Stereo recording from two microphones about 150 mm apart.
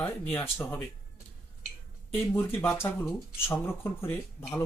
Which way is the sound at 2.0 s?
15° left (ahead or behind).